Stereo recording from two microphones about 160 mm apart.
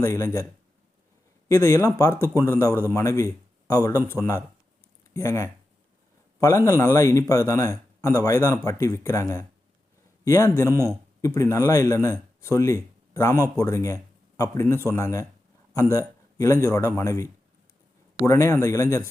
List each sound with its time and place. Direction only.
0.0 s a man's voice: 15° left (ahead or behind)
1.5 s a man's voice: 15° left (ahead or behind)
18.3 s a man's voice: 15° left (ahead or behind)